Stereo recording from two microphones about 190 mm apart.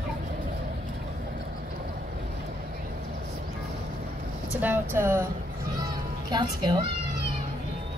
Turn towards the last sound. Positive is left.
turn(degrees=-25)  # may be behind; listen again after turning